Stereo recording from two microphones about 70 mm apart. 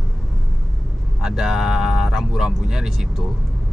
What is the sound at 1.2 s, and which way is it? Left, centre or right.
Speech, centre.